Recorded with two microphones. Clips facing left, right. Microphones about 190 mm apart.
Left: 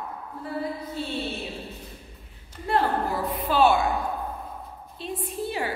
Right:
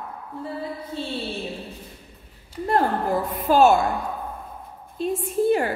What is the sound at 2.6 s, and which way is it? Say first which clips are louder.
A woman's voice: right 3 dB; 45° right (ahead or behind).